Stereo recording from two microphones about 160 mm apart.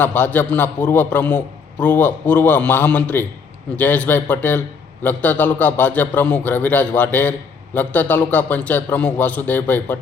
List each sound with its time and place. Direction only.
0.0 s a man's voice: 10° left (ahead or behind)